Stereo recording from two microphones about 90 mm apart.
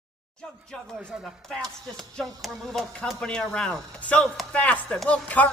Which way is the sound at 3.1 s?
10° left (ahead or behind).